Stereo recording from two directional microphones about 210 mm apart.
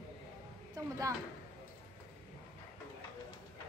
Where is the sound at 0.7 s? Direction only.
15° right (ahead or behind).